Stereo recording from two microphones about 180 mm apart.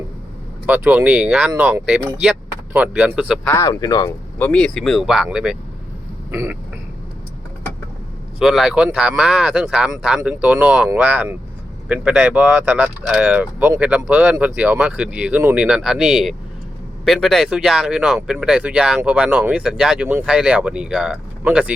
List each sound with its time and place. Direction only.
0.7 s speech: 10° right (ahead or behind)
3.5 s speech: 15° left (ahead or behind)
4.4 s speech: 10° left (ahead or behind)
6.3 s speech: 15° right (ahead or behind)
8.4 s speech: centre (ahead or behind)